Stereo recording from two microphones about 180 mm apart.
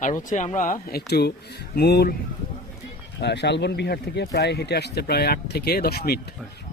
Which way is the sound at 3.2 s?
70° left (ahead or behind).